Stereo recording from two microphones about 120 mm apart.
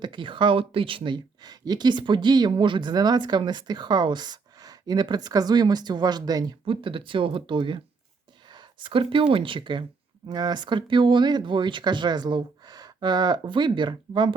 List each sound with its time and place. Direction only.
0.0 s speech: 45° right (ahead or behind)
8.4 s a sound: 40° right (ahead or behind)
9.3 s speech: 45° right (ahead or behind)